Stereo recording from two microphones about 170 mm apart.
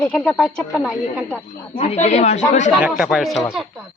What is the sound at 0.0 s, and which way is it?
Speech, 10° left (ahead or behind).